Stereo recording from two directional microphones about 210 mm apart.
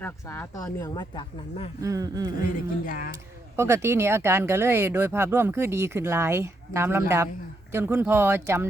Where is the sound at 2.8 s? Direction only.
45° left (ahead or behind).